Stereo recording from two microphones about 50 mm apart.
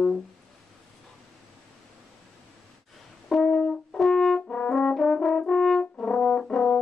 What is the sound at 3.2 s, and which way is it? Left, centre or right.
Brass instrument, centre.